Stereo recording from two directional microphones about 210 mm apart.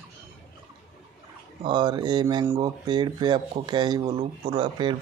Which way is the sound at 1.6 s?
20° right (ahead or behind).